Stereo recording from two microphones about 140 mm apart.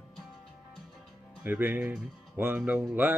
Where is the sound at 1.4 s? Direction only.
10° right (ahead or behind).